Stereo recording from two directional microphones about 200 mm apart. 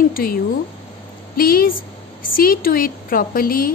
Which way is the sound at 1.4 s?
50° left (ahead or behind).